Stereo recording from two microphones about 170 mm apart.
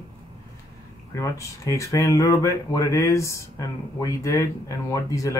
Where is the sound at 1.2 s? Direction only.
20° left (ahead or behind).